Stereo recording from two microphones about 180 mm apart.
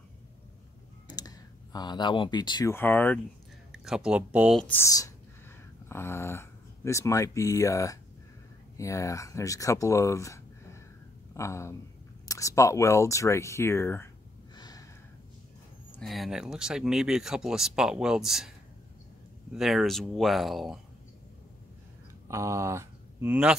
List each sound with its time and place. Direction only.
1.1 s a sound: 20° left (ahead or behind)
2.7 s speech: 10° left (ahead or behind)
3.7 s speech: centre (ahead or behind)
4.6 s speech: 10° left (ahead or behind)
14.6 s a sound: 20° left (ahead or behind)
16.0 s speech: centre (ahead or behind)
19.5 s speech: centre (ahead or behind)
22.3 s speech: 15° right (ahead or behind)